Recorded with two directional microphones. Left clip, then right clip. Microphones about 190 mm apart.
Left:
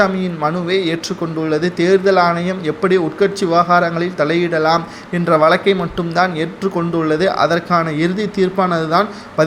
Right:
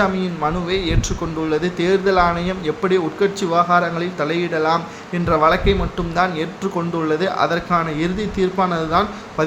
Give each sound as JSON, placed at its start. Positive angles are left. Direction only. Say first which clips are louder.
{"t": 0.0, "sound": "a man's voice", "louder": "left 3 dB", "side_deg": 15}